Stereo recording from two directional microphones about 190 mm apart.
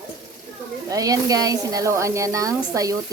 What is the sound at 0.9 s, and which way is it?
A woman's voice, 20° right (ahead or behind).